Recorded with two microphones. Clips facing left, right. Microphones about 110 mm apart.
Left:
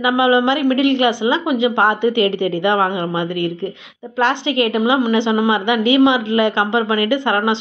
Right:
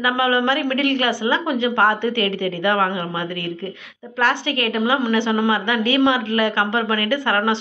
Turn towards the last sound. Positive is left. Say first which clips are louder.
# left 3 dB
turn(degrees=15)  # may be behind; listen again after turning